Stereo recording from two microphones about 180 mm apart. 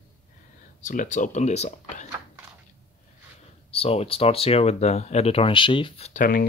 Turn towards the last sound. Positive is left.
turn(degrees=50)  # may be behind; listen again after turning